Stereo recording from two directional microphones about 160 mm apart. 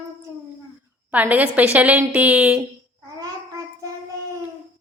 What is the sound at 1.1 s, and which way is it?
A woman's voice, 10° right (ahead or behind).